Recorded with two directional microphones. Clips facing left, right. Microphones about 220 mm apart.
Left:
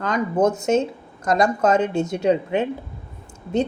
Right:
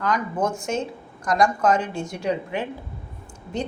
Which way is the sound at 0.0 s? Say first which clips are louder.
Left 5 dB; 25° left (ahead or behind).